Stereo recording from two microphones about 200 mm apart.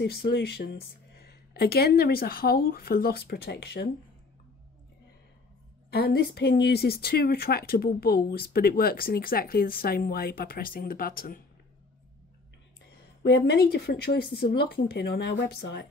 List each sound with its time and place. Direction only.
0.0 s speech: 55° left (ahead or behind)
5.9 s speech: 50° left (ahead or behind)
12.9 s speech: 55° left (ahead or behind)